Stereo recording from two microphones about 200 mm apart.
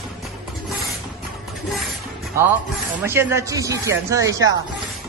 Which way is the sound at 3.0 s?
10° right (ahead or behind).